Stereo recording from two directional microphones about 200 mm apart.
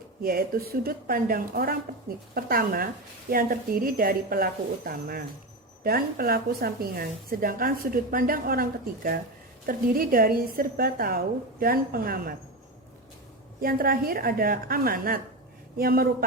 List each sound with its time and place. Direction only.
0.2 s speech: 45° right (ahead or behind)
9.6 s speech: 45° right (ahead or behind)
13.6 s speech: 45° right (ahead or behind)